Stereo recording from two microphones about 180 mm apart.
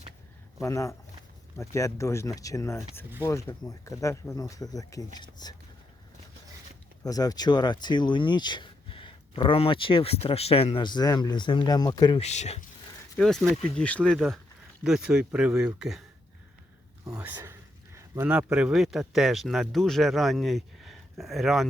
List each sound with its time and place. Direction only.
0.6 s speech: 15° left (ahead or behind)
7.0 s speech: 20° left (ahead or behind)
12.2 s speech: 40° left (ahead or behind)
13.1 s speech: centre (ahead or behind)
14.8 s speech: 5° right (ahead or behind)
17.1 s speech: 10° right (ahead or behind)